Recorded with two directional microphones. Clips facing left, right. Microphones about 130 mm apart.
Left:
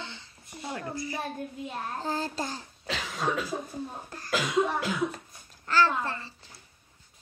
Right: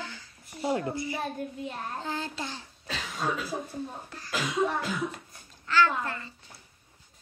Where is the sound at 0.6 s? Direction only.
25° right (ahead or behind).